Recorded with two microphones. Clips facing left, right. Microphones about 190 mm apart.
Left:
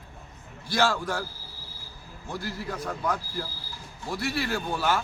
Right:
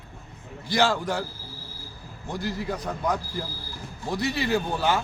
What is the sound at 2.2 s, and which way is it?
A man's voice, 15° right (ahead or behind).